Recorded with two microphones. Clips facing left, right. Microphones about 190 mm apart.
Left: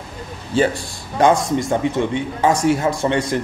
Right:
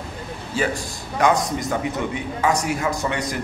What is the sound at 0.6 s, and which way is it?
A man's voice, 30° left (ahead or behind).